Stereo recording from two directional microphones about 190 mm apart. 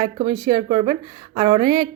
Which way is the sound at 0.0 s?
20° right (ahead or behind).